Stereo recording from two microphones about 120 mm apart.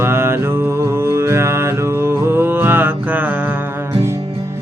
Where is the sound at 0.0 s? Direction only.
20° right (ahead or behind).